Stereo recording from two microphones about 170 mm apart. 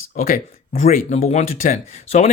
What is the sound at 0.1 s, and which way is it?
Speech, 60° left (ahead or behind).